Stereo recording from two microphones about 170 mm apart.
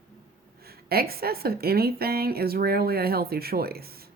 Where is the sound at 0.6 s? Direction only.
65° right (ahead or behind).